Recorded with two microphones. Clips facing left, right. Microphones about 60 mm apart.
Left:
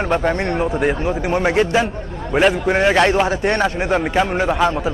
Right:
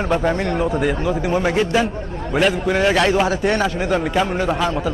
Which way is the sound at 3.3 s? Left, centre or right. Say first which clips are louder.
Left 1 dB; left.